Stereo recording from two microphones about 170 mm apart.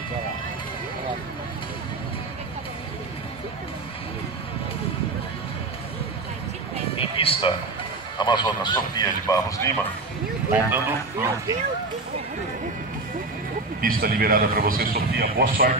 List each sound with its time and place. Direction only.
7.0 s a sound: 30° left (ahead or behind)
8.2 s a man's voice: 25° left (ahead or behind)
10.5 s speech: 15° right (ahead or behind)
13.7 s a man's voice: 55° right (ahead or behind)